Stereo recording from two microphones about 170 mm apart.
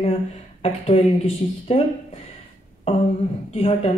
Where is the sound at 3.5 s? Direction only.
35° left (ahead or behind).